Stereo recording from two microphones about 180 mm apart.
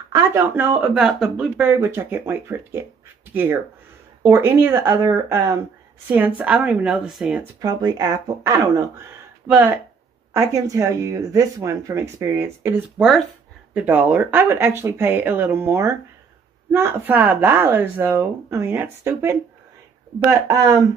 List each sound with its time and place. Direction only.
0.1 s speech: 15° right (ahead or behind)
0.7 s speech: centre (ahead or behind)
4.3 s speech: 15° right (ahead or behind)
7.6 s speech: 20° right (ahead or behind)